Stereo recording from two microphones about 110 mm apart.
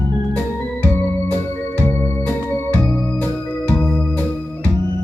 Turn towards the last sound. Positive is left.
turn(degrees=15)  # may be behind; listen again after turning